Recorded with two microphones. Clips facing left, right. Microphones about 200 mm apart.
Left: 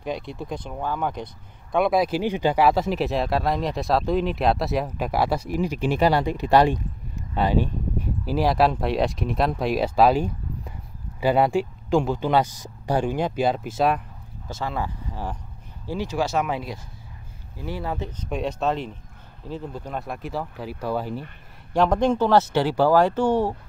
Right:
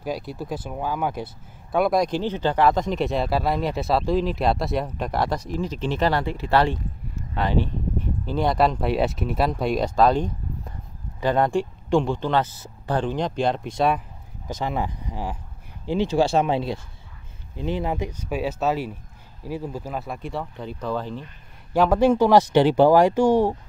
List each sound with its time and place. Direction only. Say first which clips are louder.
0.0 s speech: right 1 dB; 5° right (ahead or behind)
14.5 s speech: right 2 dB; 15° right (ahead or behind); by 21.3 s 10° left (ahead or behind)
21.7 s speech: right 2 dB; 5° right (ahead or behind)